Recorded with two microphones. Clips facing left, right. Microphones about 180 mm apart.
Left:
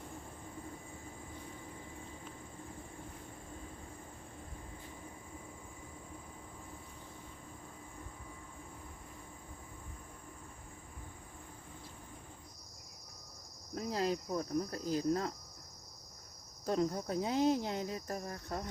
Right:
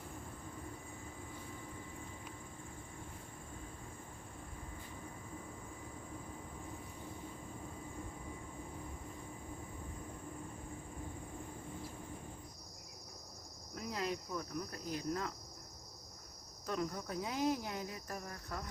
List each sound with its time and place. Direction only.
13.7 s cricket: 30° left (ahead or behind)
16.6 s cricket: 30° left (ahead or behind)